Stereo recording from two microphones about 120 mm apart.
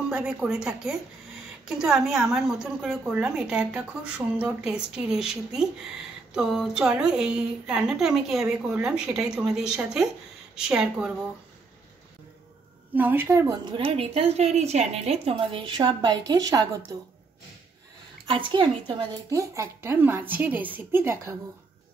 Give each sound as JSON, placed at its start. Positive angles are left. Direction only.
{"t": 0.1, "sound": "speech", "side_deg": -5}
{"t": 12.9, "sound": "a woman's voice", "side_deg": -15}
{"t": 13.5, "sound": "a woman's voice", "side_deg": -40}
{"t": 18.2, "sound": "a woman's voice", "side_deg": -45}
{"t": 19.3, "sound": "a woman's voice", "side_deg": -25}